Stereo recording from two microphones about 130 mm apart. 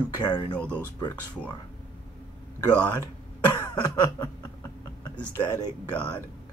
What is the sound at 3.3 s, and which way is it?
Cough, 30° left (ahead or behind).